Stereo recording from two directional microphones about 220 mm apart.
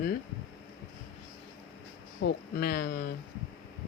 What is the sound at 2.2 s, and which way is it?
Speech, 55° left (ahead or behind).